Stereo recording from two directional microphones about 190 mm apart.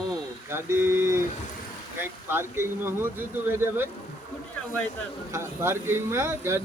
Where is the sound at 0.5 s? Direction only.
15° right (ahead or behind).